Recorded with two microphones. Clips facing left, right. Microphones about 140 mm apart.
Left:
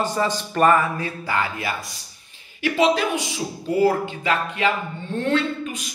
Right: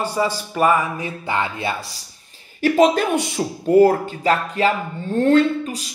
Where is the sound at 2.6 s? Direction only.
45° right (ahead or behind).